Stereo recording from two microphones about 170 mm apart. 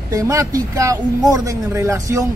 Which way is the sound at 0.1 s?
20° right (ahead or behind).